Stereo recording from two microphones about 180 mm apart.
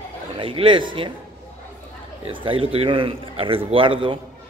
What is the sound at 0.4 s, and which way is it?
Speech, 30° right (ahead or behind).